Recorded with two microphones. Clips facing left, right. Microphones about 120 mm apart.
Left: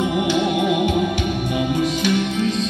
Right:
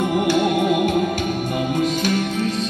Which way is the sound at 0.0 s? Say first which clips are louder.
Right 1 dB; 45° right (ahead or behind).